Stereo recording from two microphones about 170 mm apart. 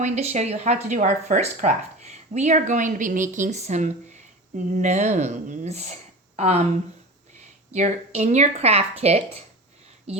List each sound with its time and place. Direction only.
0.0 s speech: 45° right (ahead or behind)
7.7 s speech: 40° right (ahead or behind)